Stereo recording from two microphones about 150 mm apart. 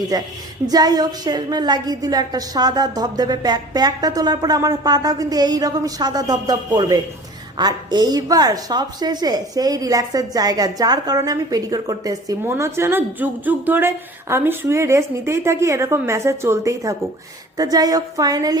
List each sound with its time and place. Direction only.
0.1 s a woman's voice: 25° right (ahead or behind)